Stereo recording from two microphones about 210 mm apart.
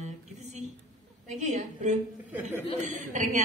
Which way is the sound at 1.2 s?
35° right (ahead or behind).